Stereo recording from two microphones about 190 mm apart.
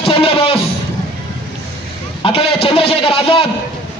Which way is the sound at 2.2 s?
30° left (ahead or behind).